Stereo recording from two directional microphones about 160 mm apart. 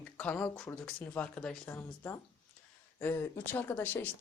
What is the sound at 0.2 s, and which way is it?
Speech, 10° left (ahead or behind).